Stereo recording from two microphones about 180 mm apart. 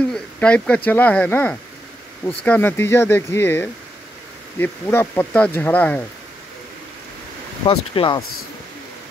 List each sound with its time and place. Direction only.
0.1 s speech: 5° left (ahead or behind)
7.6 s speech: 30° left (ahead or behind)